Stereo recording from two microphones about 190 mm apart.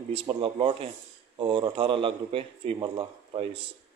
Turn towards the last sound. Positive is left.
turn(degrees=-25)  # may be behind; listen again after turning